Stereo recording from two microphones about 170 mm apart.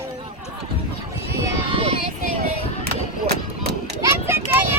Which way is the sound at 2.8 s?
65° right (ahead or behind).